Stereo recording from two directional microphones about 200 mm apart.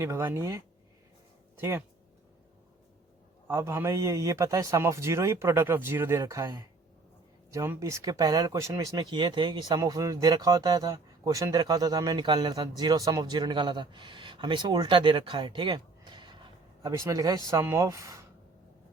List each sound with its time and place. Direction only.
0.0 s a man's voice: 15° right (ahead or behind)
3.4 s a man's voice: 15° right (ahead or behind)